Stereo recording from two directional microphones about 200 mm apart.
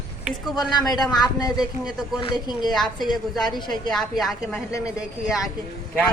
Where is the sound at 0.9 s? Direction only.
20° left (ahead or behind).